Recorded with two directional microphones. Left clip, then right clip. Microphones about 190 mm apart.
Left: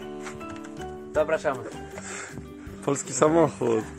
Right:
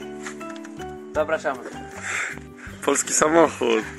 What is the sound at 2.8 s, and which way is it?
Speech, centre (ahead or behind).